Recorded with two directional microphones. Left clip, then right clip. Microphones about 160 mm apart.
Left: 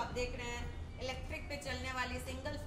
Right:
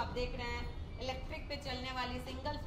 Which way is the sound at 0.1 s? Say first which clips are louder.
Right 1 dB; 10° left (ahead or behind).